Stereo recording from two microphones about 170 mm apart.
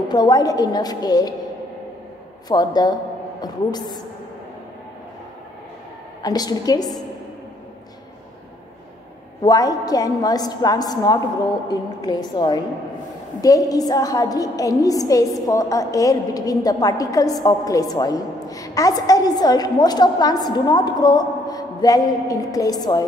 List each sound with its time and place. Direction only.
0.1 s a woman's voice: 25° left (ahead or behind)
2.4 s a woman's voice: 25° left (ahead or behind)
6.2 s a woman's voice: 20° left (ahead or behind)
9.4 s a woman's voice: 20° left (ahead or behind)